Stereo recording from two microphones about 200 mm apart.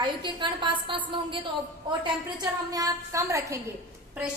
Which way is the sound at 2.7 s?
15° right (ahead or behind).